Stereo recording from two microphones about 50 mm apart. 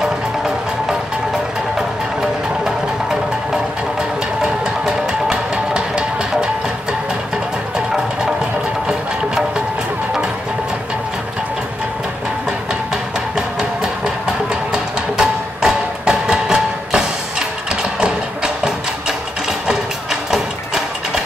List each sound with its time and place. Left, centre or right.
4.4 s music: centre
13.6 s music: centre